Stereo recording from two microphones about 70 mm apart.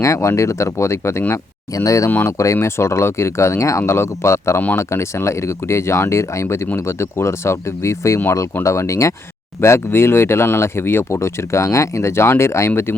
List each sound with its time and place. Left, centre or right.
0.0 s speech: left
1.7 s speech: left
2.0 s speech: left
2.4 s speech: left